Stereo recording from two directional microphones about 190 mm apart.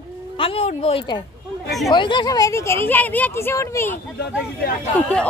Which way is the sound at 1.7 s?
Centre (ahead or behind).